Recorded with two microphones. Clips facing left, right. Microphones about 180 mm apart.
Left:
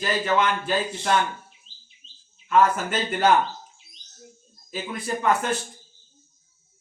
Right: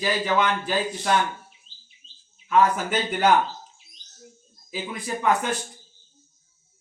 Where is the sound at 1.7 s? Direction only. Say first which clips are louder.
Left 1 dB; 90° left.